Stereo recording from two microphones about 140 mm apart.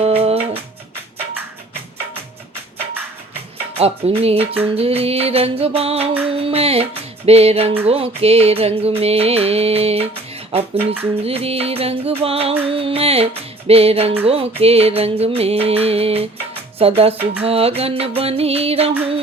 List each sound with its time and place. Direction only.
0.0 s music: 45° right (ahead or behind)
3.8 s music: 45° right (ahead or behind)